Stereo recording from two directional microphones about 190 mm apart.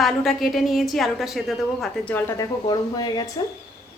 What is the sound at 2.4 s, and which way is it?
Speech, 20° left (ahead or behind).